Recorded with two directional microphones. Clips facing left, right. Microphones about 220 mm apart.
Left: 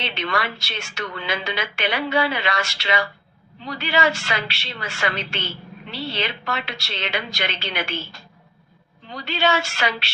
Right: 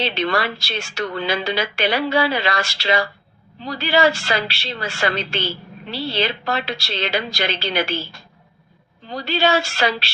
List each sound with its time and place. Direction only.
0.0 s a woman's voice: 35° right (ahead or behind)
9.0 s a woman's voice: 35° right (ahead or behind)